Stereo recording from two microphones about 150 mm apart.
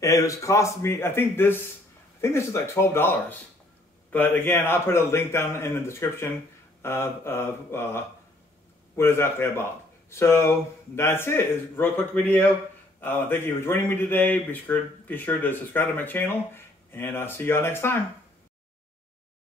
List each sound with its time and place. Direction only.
0.0 s speech: 20° left (ahead or behind)